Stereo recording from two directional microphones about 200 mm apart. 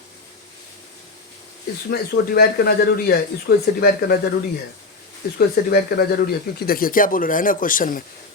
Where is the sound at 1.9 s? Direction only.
50° left (ahead or behind).